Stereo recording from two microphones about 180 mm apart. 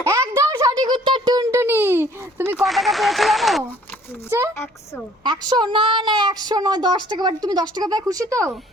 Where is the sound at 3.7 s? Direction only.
10° left (ahead or behind).